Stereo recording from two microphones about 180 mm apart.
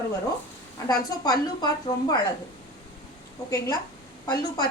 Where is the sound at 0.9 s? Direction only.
20° left (ahead or behind).